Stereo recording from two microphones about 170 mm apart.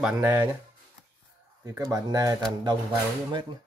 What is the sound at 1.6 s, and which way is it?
Speech, 20° right (ahead or behind).